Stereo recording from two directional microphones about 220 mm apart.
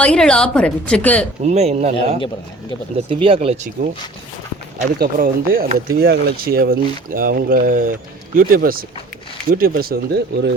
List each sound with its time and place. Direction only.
0.0 s a woman's voice: 5° left (ahead or behind)
1.5 s speech: 30° right (ahead or behind)
4.8 s speech: 40° right (ahead or behind)